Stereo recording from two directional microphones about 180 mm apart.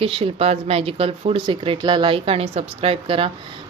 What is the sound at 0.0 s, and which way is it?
Speech, 30° right (ahead or behind).